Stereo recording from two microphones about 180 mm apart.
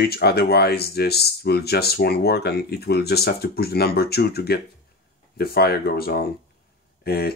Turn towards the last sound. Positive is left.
turn(degrees=60)  # may be behind; listen again after turning